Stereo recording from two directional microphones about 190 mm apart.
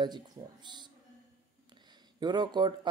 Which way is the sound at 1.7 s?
20° right (ahead or behind).